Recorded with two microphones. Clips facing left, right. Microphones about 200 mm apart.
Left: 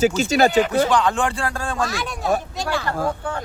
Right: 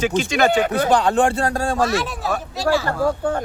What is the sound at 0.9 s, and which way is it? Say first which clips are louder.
Speech: right 3 dB; 40° right (ahead or behind).